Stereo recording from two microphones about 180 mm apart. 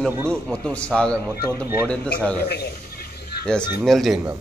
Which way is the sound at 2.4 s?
60° left (ahead or behind).